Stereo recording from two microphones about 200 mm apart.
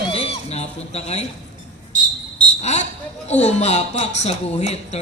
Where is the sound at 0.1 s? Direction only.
30° left (ahead or behind).